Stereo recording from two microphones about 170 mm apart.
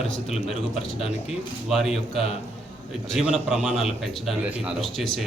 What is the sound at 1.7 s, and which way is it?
Speech, centre (ahead or behind).